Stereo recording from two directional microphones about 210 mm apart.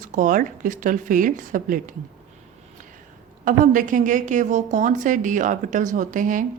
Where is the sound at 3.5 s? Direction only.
40° right (ahead or behind).